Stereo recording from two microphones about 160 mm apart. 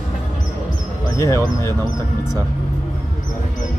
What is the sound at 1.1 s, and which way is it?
Speech, 20° left (ahead or behind).